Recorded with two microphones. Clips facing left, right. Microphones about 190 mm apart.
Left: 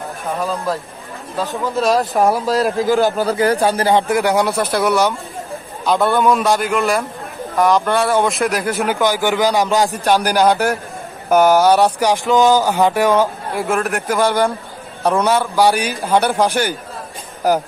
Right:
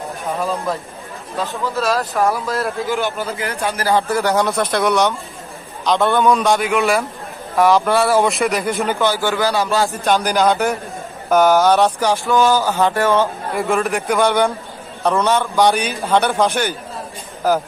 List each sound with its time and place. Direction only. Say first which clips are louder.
0.4 s a man's voice: left 1 dB; centre (ahead or behind)
1.4 s speech: left 3 dB; 20° left (ahead or behind)
2.9 s speech: left 6 dB; 40° left (ahead or behind)
3.6 s speech: right 1 dB; 30° left (ahead or behind)
4.1 s a man's voice: left 2 dB; 10° left (ahead or behind)
13.6 s a man's voice: right 1 dB; centre (ahead or behind)